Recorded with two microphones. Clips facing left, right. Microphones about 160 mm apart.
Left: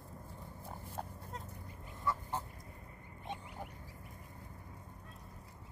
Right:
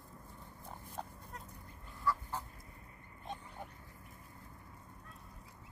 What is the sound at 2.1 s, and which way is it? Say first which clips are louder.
Goose: right 2 dB; 20° left (ahead or behind).